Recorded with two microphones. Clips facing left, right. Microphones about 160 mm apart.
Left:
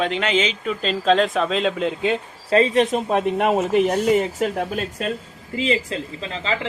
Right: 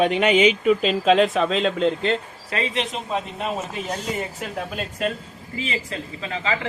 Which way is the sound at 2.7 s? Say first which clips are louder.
Left 8 dB; 45° left (ahead or behind).